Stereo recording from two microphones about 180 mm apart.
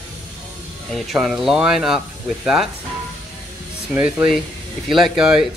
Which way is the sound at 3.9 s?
10° right (ahead or behind).